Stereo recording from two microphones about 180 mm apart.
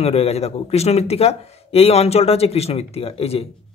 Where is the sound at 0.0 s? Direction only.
35° left (ahead or behind).